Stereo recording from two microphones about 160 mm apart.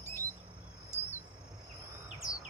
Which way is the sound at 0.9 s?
15° left (ahead or behind).